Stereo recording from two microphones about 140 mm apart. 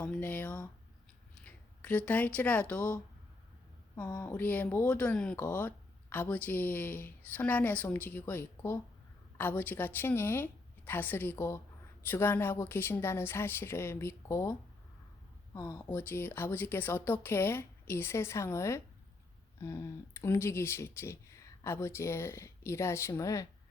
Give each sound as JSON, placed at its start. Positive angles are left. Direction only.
{"t": 0.0, "sound": "speech", "side_deg": 10}
{"t": 4.0, "sound": "speech", "side_deg": 25}
{"t": 4.3, "sound": "a woman's voice", "side_deg": 10}
{"t": 15.5, "sound": "a woman's voice", "side_deg": 25}